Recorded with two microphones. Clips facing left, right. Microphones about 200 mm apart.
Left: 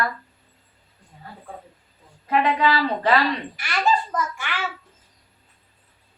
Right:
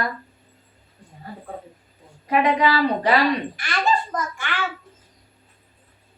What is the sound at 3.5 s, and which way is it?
Speech, 5° left (ahead or behind).